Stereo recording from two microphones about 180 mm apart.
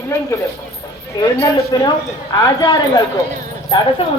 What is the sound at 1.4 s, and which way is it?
Speech, 20° left (ahead or behind).